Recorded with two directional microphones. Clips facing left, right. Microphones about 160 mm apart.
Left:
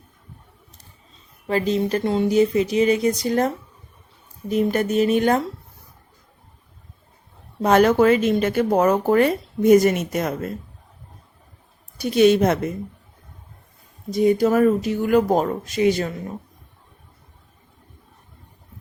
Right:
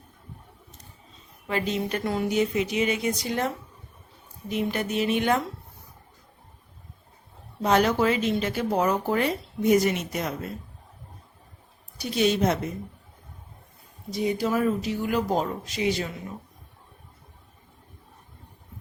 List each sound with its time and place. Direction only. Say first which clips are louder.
1.5 s speech: left 6 dB; 35° left (ahead or behind)
7.6 s speech: left 6 dB; 50° left (ahead or behind)
11.9 s a woman's voice: left 8 dB; 55° left (ahead or behind)
14.1 s speech: left 8 dB; 50° left (ahead or behind)